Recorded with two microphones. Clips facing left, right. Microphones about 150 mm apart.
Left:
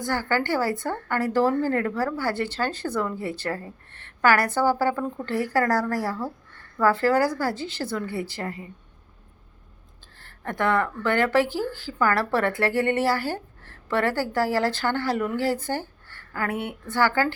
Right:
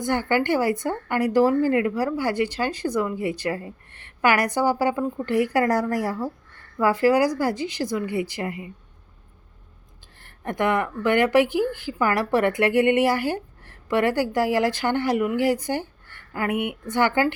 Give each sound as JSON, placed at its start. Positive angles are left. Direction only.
{"t": 0.0, "sound": "speech", "side_deg": -20}
{"t": 10.2, "sound": "speech", "side_deg": -15}